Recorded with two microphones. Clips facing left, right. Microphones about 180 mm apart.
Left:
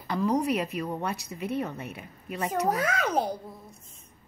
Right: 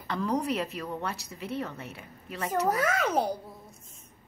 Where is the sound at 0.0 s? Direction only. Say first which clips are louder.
Left 3 dB; 10° left (ahead or behind).